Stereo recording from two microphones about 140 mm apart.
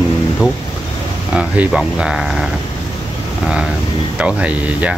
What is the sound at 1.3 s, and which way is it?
Speech, 10° right (ahead or behind).